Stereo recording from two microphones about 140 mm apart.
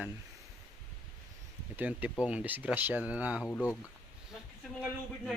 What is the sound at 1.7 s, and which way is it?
Speech, 10° right (ahead or behind).